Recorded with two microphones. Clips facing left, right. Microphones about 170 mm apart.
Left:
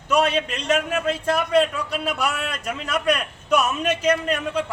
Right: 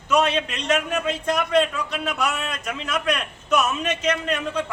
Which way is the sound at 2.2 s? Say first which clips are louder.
Left 1 dB; 30° left (ahead or behind).